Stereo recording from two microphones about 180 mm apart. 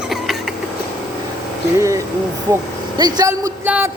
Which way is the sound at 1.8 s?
15° right (ahead or behind).